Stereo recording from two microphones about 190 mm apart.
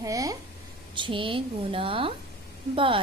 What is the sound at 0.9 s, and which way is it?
A woman's voice, 25° right (ahead or behind).